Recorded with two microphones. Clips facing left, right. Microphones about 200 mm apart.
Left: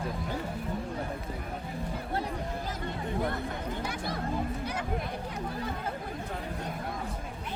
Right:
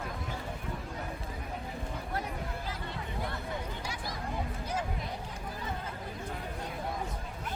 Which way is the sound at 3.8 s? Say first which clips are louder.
Left 5 dB; 55° left (ahead or behind).